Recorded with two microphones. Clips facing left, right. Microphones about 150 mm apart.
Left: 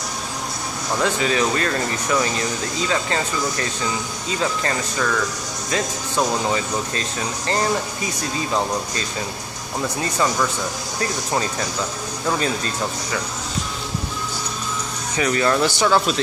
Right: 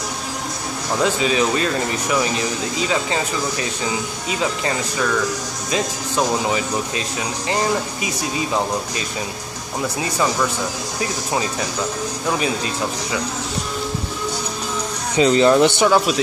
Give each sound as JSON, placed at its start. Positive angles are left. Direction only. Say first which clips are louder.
{"t": 1.0, "sound": "speech", "louder": "right 2 dB", "side_deg": -15}
{"t": 12.4, "sound": "speech", "louder": "right 1 dB", "side_deg": -15}
{"t": 15.1, "sound": "speech", "louder": "right 6 dB", "side_deg": -20}